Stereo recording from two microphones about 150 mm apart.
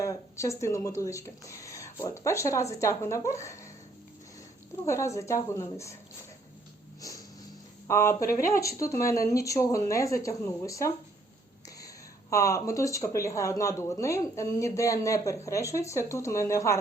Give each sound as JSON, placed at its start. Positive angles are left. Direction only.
{"t": 0.0, "sound": "speech", "side_deg": 20}
{"t": 4.9, "sound": "speech", "side_deg": 20}
{"t": 7.9, "sound": "speech", "side_deg": 20}
{"t": 8.2, "sound": "speech", "side_deg": 70}
{"t": 8.5, "sound": "speech", "side_deg": 20}
{"t": 12.3, "sound": "speech", "side_deg": 20}